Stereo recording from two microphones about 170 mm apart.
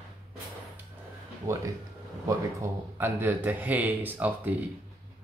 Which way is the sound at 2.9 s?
10° right (ahead or behind).